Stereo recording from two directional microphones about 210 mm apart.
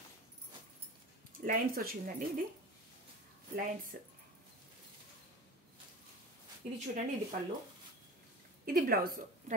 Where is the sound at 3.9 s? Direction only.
40° right (ahead or behind).